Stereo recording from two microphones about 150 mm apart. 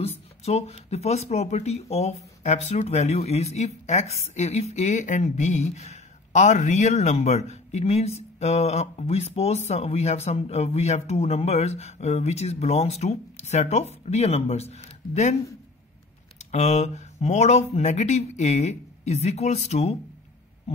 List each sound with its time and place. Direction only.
0.0 s speech: 45° left (ahead or behind)
16.5 s speech: 50° left (ahead or behind)
20.7 s owl: 45° left (ahead or behind)